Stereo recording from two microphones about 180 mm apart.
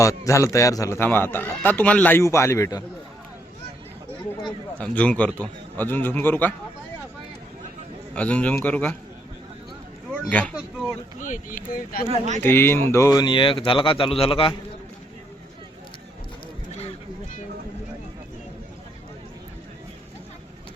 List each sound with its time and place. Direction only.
0.0 s a man's voice: 15° left (ahead or behind)
4.8 s a man's voice: 5° left (ahead or behind)
8.1 s a man's voice: 5° left (ahead or behind)
10.2 s a man's voice: 5° left (ahead or behind)
11.2 s speech: 45° left (ahead or behind)
12.0 s speech: 35° right (ahead or behind)
12.4 s speech: 10° left (ahead or behind); by 14.5 s 30° left (ahead or behind)